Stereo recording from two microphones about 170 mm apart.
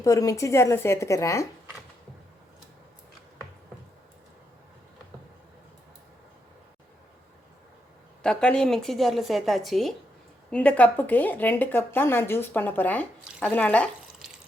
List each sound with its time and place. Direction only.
0.0 s speech: 20° left (ahead or behind)
8.2 s a woman's voice: 5° left (ahead or behind)